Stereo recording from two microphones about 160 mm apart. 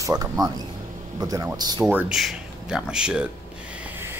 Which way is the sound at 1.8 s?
Centre (ahead or behind).